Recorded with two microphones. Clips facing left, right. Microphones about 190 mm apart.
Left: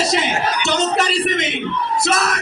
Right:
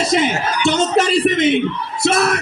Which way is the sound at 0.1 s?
55° right (ahead or behind).